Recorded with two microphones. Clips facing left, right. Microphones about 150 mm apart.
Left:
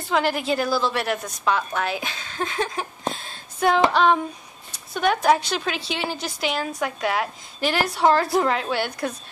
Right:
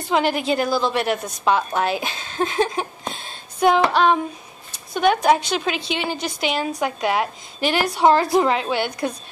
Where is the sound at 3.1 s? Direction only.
20° right (ahead or behind).